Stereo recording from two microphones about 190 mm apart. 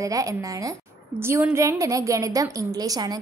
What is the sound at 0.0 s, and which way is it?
A woman's voice, 15° right (ahead or behind).